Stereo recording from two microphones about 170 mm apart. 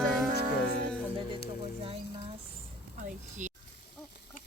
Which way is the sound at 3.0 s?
45° right (ahead or behind).